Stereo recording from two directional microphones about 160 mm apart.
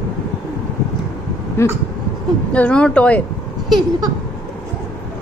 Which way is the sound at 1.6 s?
15° left (ahead or behind).